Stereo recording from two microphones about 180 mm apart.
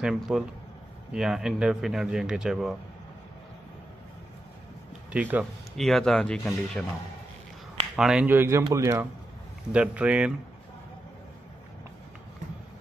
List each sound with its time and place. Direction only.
0.0 s speech: centre (ahead or behind)
5.1 s speech: 10° right (ahead or behind)
7.9 s speech: 5° right (ahead or behind)